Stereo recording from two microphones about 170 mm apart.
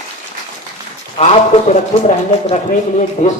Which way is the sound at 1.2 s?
40° left (ahead or behind).